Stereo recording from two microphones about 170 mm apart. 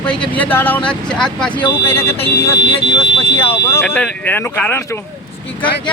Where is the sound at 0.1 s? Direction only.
10° left (ahead or behind).